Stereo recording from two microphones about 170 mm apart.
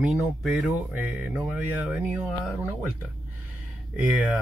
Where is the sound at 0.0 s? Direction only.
Centre (ahead or behind).